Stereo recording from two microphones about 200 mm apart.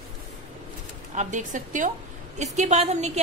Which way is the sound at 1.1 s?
40° right (ahead or behind).